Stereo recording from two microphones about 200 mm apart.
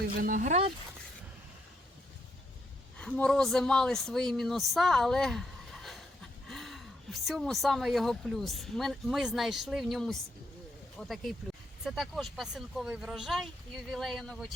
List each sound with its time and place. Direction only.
0.2 s speech: 40° right (ahead or behind)
3.0 s speech: 5° left (ahead or behind)